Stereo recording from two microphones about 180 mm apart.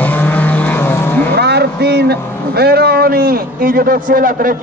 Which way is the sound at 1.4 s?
65° right (ahead or behind).